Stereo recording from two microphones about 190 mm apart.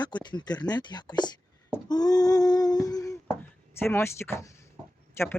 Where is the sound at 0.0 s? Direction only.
25° left (ahead or behind).